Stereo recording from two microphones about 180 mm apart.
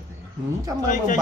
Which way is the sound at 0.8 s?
45° left (ahead or behind).